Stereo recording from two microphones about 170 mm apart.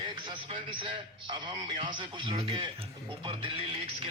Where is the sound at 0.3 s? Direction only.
30° right (ahead or behind).